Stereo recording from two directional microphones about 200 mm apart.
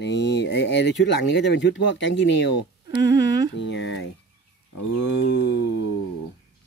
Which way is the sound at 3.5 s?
60° left (ahead or behind).